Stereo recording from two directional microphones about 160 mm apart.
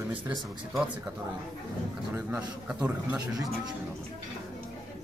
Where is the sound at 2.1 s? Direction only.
10° right (ahead or behind).